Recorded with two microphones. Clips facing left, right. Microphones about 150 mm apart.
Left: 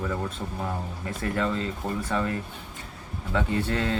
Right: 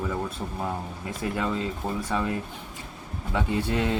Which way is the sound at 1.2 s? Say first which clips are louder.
Left 1 dB; 10° right (ahead or behind).